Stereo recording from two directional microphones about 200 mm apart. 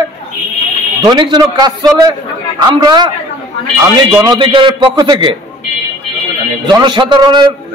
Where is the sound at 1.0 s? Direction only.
20° right (ahead or behind).